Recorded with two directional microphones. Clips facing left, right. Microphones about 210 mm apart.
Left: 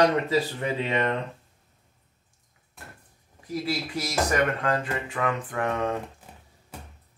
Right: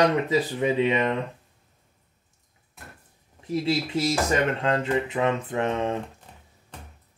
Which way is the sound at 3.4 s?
25° right (ahead or behind).